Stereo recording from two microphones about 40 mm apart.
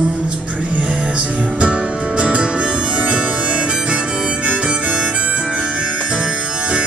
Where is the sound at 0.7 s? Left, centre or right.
Right.